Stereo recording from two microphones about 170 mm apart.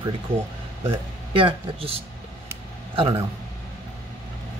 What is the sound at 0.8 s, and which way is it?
Speech, 30° right (ahead or behind).